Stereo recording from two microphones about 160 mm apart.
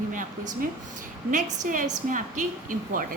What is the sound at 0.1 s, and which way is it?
A woman's voice, 55° right (ahead or behind).